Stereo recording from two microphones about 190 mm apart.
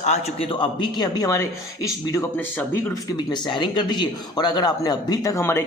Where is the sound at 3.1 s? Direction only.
25° left (ahead or behind).